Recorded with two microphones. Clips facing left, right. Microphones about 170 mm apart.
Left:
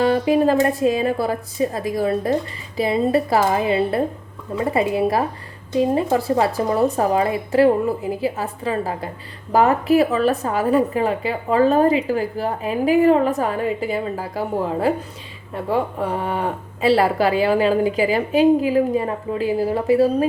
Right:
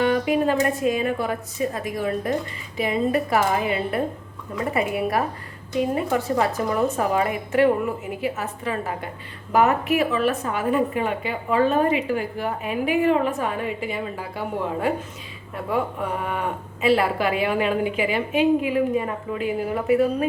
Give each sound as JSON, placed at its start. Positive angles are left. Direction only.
{"t": 0.0, "sound": "a woman's voice", "side_deg": 35}